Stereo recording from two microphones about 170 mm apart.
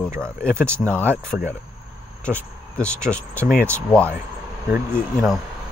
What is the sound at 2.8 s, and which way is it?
Speech, 5° left (ahead or behind).